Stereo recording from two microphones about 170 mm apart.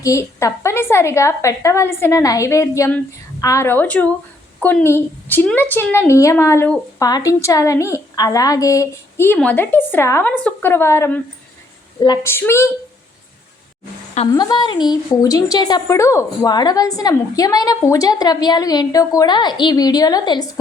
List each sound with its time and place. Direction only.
0.0 s a woman's voice: 20° left (ahead or behind)
14.3 s a woman's voice: 25° left (ahead or behind)